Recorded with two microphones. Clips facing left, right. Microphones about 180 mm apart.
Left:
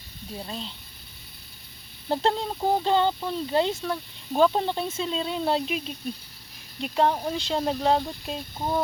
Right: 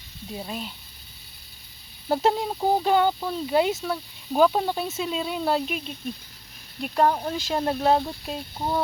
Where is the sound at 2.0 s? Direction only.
10° right (ahead or behind).